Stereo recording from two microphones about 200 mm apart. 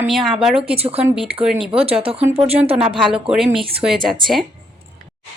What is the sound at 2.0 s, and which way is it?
Speech, 30° right (ahead or behind).